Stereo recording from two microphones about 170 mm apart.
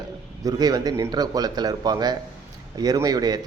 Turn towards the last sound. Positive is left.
turn(degrees=-25)  # may be behind; listen again after turning